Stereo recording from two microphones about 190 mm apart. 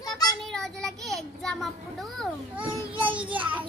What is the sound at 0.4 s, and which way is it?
Child singing, centre (ahead or behind).